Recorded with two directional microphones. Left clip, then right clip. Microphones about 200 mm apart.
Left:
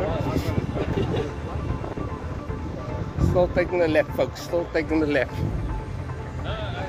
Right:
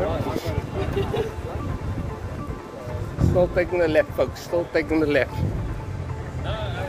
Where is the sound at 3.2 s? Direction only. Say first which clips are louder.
Right 1 dB; 20° left (ahead or behind).